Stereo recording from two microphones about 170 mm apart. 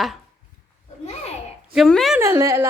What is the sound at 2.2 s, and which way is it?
Speech, 15° right (ahead or behind).